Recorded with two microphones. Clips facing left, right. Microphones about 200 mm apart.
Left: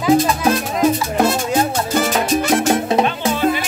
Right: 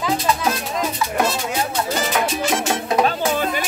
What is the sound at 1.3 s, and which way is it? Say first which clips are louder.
Music: left 6 dB; 50° left (ahead or behind).